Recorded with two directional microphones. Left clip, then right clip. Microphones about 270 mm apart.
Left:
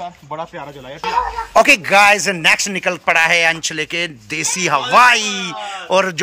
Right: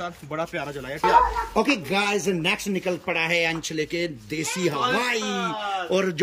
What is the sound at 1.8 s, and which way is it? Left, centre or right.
A man's voice, left.